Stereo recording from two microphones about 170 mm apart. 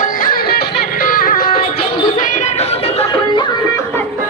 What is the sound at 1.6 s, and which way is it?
Music, 35° left (ahead or behind).